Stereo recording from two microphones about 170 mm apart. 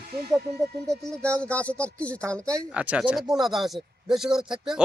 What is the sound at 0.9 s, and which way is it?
Speech, 5° left (ahead or behind).